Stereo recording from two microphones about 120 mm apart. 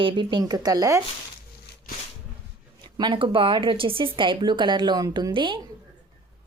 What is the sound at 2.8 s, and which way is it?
Speech, 40° right (ahead or behind).